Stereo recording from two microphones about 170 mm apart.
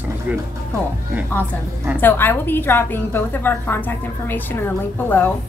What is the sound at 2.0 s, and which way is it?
A woman's voice, 10° left (ahead or behind).